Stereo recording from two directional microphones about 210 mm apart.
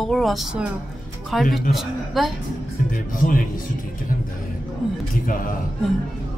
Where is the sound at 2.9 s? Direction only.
40° left (ahead or behind).